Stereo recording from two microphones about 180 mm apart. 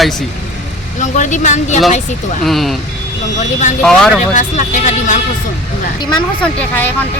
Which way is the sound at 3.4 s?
40° left (ahead or behind).